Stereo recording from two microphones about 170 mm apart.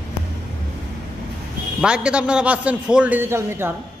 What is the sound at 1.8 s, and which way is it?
A man's voice, 5° right (ahead or behind).